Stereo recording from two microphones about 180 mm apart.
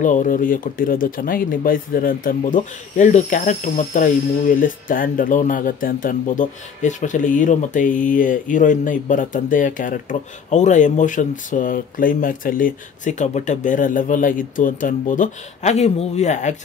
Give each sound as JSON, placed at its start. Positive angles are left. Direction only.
{"t": 0.0, "sound": "speech", "side_deg": 45}